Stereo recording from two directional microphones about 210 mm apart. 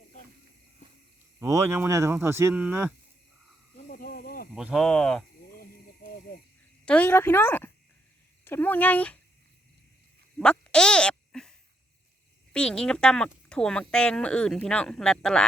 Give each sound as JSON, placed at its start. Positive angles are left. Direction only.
{"t": 1.4, "sound": "speech", "side_deg": -15}
{"t": 3.8, "sound": "snake", "side_deg": 45}
{"t": 4.5, "sound": "speech", "side_deg": 0}
{"t": 5.5, "sound": "a sound", "side_deg": 45}
{"t": 6.8, "sound": "speech", "side_deg": 5}
{"t": 10.3, "sound": "a sound", "side_deg": 5}
{"t": 12.5, "sound": "speech", "side_deg": 5}